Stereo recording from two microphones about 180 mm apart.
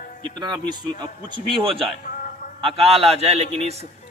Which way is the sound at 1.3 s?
30° right (ahead or behind).